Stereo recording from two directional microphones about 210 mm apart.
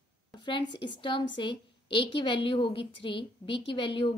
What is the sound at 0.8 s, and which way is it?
A woman's voice, 25° left (ahead or behind).